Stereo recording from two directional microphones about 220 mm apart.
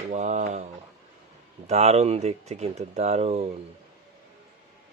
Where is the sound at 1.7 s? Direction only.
30° right (ahead or behind).